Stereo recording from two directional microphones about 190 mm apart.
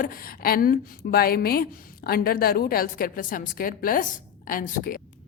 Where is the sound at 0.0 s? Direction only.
50° left (ahead or behind).